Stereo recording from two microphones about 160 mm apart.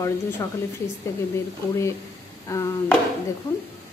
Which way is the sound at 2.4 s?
20° left (ahead or behind).